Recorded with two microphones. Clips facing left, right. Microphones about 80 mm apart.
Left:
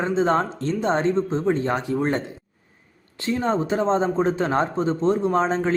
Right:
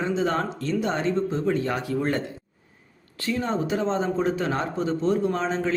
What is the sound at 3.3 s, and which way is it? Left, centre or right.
Speech, left.